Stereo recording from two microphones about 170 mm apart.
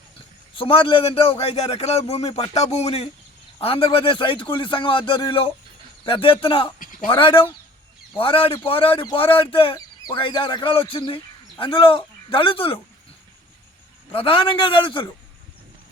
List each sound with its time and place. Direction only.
0.5 s a man's voice: 30° left (ahead or behind)
6.7 s a sound: 50° left (ahead or behind)
7.1 s a man's voice: 30° left (ahead or behind)
14.1 s speech: 30° left (ahead or behind)